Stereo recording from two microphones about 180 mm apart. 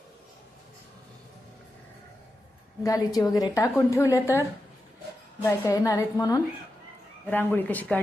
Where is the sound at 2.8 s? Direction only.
20° left (ahead or behind).